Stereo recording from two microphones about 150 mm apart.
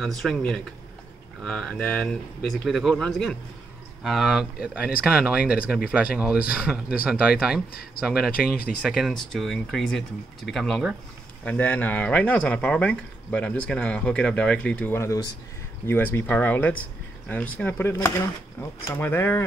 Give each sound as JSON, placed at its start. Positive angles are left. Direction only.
{"t": 0.0, "sound": "speech", "side_deg": 0}
{"t": 11.4, "sound": "speech", "side_deg": 10}
{"t": 18.9, "sound": "speech", "side_deg": 15}